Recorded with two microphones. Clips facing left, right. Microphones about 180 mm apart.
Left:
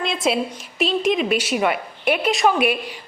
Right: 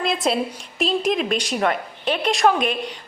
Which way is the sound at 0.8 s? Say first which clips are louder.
Left 1 dB; centre (ahead or behind).